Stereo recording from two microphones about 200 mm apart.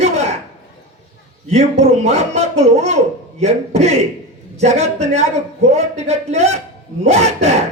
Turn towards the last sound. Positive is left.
turn(degrees=-35)  # may be behind; listen again after turning